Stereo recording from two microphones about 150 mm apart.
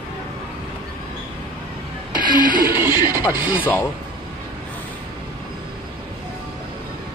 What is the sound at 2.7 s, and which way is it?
Music, 15° right (ahead or behind).